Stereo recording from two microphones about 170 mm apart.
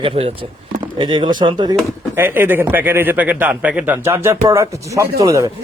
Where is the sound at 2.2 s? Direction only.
10° right (ahead or behind).